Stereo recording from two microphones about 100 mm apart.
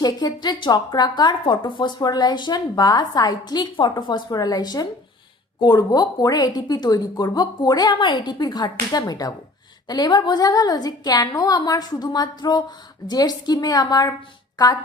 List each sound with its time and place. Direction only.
0.0 s a woman's voice: 45° left (ahead or behind)